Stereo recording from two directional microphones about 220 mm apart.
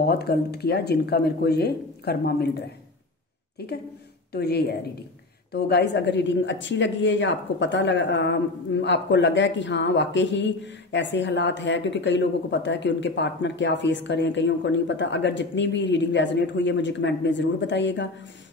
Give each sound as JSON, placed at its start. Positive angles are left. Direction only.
{"t": 0.2, "sound": "speech", "side_deg": 45}
{"t": 3.5, "sound": "a woman's voice", "side_deg": 45}